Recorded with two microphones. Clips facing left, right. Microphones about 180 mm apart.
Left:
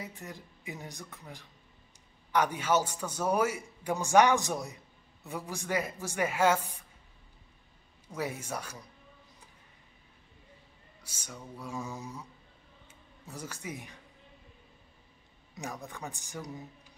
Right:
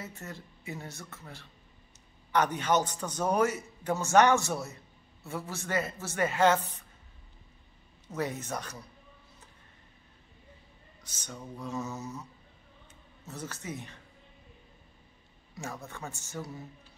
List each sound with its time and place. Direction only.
0.0 s a man's voice: 15° left (ahead or behind)
8.1 s a man's voice: 10° left (ahead or behind)
11.1 s a man's voice: 10° left (ahead or behind)
15.5 s a man's voice: 15° left (ahead or behind)